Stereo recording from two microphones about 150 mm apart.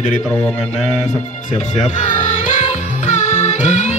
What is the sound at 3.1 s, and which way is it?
Music, 50° left (ahead or behind).